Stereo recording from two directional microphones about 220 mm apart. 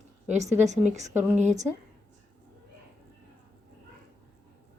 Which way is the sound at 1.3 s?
30° right (ahead or behind).